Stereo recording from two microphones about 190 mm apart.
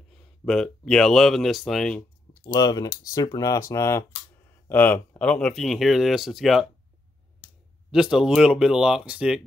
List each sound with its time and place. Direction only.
0.5 s speech: 5° left (ahead or behind)
2.4 s speech: 20° left (ahead or behind); by 6.7 s centre (ahead or behind)
7.9 s speech: 5° right (ahead or behind)